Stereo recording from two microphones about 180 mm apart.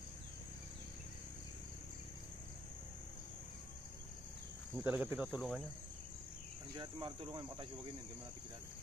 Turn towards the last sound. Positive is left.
turn(degrees=-30)  # may be behind; listen again after turning